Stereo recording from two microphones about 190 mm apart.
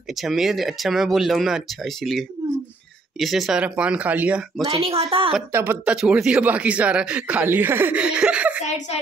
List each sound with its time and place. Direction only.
0.1 s speech: centre (ahead or behind)
4.6 s speech: 30° right (ahead or behind)
5.5 s speech: 10° right (ahead or behind)
8.6 s speech: 35° left (ahead or behind)